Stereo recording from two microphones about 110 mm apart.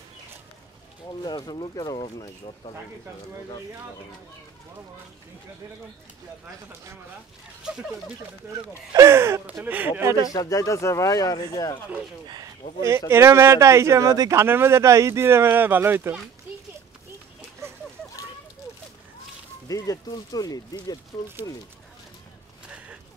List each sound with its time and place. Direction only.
1.2 s speech: 40° left (ahead or behind)
7.7 s speech: 10° right (ahead or behind)
8.9 s speech: 25° right (ahead or behind)
10.3 s speech: 30° left (ahead or behind)
13.1 s speech: 25° right (ahead or behind)
14.4 s speech: 20° right (ahead or behind)
19.7 s speech: 35° left (ahead or behind)